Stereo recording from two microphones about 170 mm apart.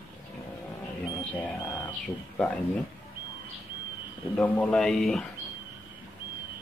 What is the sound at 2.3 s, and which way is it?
Speech, 10° left (ahead or behind).